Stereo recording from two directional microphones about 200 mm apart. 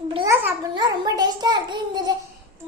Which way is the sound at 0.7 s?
20° right (ahead or behind).